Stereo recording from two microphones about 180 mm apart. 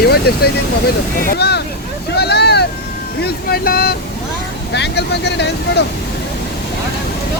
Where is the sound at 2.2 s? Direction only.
65° left (ahead or behind).